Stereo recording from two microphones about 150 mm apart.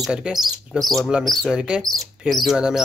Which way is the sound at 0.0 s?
5° right (ahead or behind).